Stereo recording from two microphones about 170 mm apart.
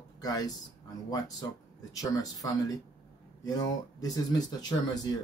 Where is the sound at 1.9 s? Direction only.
20° left (ahead or behind).